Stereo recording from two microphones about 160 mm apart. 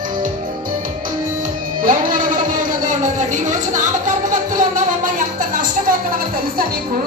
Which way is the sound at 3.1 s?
50° right (ahead or behind).